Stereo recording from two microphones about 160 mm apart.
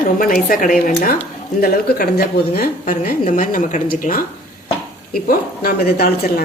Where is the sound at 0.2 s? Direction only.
60° left (ahead or behind).